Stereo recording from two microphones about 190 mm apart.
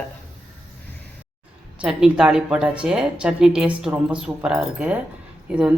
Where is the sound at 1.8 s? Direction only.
5° right (ahead or behind).